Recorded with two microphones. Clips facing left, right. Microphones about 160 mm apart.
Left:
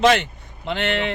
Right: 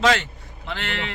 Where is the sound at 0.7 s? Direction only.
25° left (ahead or behind).